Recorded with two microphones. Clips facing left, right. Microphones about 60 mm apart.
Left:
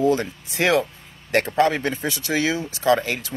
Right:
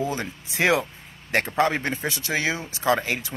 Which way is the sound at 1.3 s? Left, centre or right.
Right.